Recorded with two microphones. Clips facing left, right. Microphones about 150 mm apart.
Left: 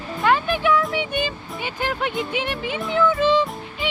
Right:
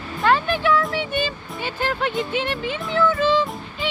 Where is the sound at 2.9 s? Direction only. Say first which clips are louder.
Left 1 dB; 15° left (ahead or behind).